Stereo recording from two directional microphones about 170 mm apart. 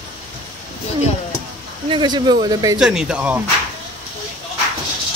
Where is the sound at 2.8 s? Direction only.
5° right (ahead or behind).